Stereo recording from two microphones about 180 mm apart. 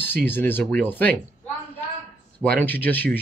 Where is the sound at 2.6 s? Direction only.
10° left (ahead or behind).